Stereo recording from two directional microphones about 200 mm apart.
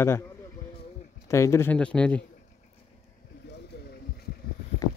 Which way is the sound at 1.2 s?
15° left (ahead or behind).